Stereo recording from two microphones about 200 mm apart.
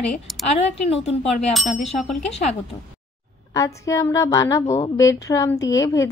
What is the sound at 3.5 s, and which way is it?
A woman's voice, 15° left (ahead or behind).